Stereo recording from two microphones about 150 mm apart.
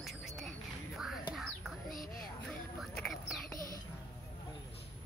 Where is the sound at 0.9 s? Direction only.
Centre (ahead or behind).